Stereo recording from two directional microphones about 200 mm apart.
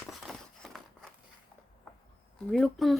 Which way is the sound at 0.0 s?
Centre (ahead or behind).